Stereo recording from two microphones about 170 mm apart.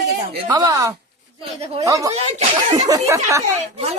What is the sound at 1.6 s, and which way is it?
Speech, 35° right (ahead or behind).